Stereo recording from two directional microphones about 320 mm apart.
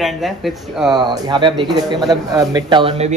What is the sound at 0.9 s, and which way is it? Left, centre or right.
A man's voice, centre.